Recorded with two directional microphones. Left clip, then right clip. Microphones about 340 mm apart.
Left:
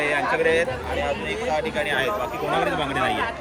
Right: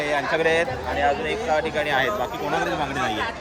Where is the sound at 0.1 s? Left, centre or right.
Right.